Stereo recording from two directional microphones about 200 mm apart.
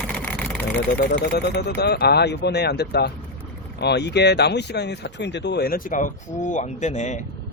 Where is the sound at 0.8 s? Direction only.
55° left (ahead or behind).